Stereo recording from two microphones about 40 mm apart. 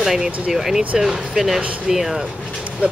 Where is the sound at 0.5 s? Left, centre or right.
Centre.